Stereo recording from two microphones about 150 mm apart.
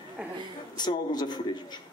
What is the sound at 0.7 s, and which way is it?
Speech, 30° left (ahead or behind).